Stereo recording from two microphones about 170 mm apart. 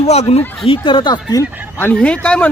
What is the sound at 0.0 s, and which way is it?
Speech, 40° left (ahead or behind).